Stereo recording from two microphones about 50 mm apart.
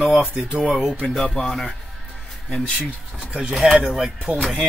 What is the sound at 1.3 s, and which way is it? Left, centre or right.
Speech, centre.